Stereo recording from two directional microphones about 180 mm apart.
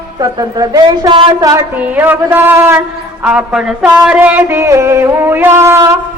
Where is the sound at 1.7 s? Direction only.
10° right (ahead or behind).